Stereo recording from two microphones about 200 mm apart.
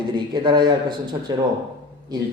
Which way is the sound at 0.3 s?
20° right (ahead or behind).